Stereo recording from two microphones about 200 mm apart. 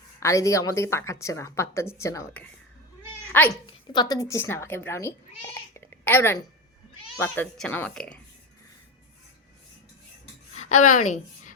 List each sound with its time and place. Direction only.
0.2 s a woman's voice: 15° left (ahead or behind)
3.3 s a woman's voice: 10° left (ahead or behind)
3.7 s a woman's voice: 20° left (ahead or behind)
5.7 s a sound: 10° left (ahead or behind)
7.2 s a woman's voice: 10° left (ahead or behind)
10.8 s a woman's voice: 40° left (ahead or behind)